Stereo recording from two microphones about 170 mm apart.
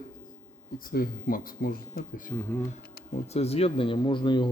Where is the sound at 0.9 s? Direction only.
60° left (ahead or behind).